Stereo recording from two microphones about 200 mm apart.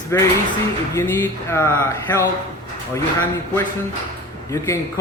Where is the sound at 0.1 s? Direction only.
15° left (ahead or behind).